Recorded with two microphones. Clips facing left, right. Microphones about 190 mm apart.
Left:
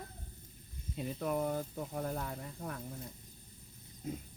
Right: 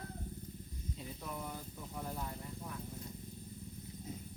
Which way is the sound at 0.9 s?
60° left (ahead or behind).